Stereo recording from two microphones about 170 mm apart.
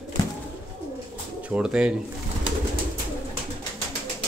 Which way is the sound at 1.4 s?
5° right (ahead or behind).